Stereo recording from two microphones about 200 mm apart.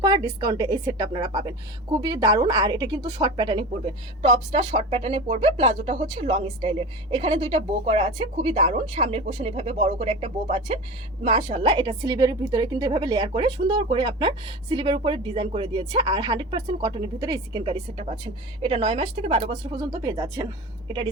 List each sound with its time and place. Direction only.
0.3 s a woman's voice: 15° right (ahead or behind)